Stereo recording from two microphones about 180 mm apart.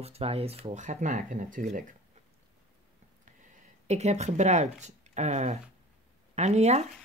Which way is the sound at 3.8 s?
40° right (ahead or behind).